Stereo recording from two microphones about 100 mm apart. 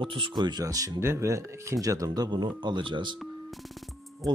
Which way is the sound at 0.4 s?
45° right (ahead or behind).